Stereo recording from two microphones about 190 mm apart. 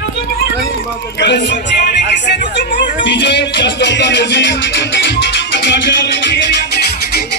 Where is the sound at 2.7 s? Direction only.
65° left (ahead or behind).